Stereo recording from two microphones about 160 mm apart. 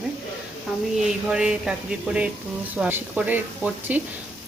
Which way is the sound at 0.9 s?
5° right (ahead or behind).